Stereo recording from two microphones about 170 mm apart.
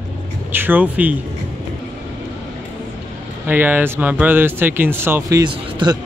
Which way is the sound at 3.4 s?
10° right (ahead or behind).